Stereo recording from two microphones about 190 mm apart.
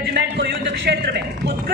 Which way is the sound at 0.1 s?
60° right (ahead or behind).